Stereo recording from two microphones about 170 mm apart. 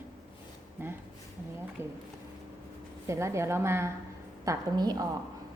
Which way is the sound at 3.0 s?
15° right (ahead or behind).